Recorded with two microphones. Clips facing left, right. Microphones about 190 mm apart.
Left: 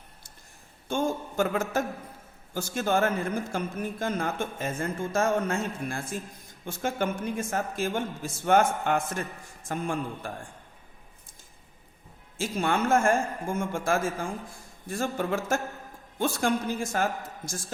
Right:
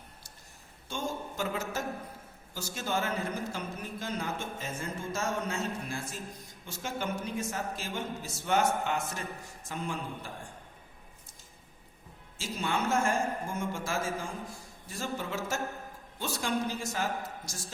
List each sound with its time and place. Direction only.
0.9 s a man's voice: 55° left (ahead or behind)
12.4 s speech: 55° left (ahead or behind)